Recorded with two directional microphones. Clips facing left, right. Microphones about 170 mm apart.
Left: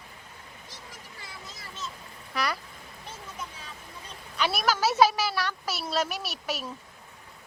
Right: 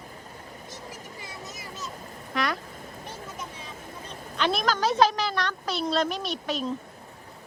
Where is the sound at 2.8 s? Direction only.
45° right (ahead or behind).